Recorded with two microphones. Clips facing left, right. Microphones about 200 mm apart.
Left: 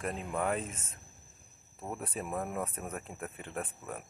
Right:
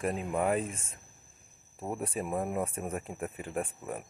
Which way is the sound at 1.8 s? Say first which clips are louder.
Right 4 dB; 10° right (ahead or behind).